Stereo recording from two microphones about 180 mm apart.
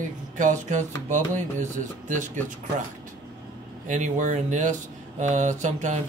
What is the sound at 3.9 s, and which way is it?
Speech, 45° right (ahead or behind).